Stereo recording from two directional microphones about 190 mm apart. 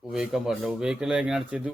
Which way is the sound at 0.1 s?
Centre (ahead or behind).